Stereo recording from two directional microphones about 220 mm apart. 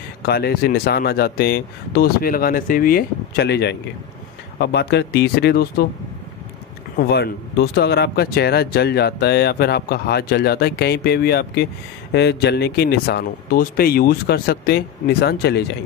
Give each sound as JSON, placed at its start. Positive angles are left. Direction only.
{"t": 0.2, "sound": "speech", "side_deg": 45}
{"t": 7.0, "sound": "speech", "side_deg": 45}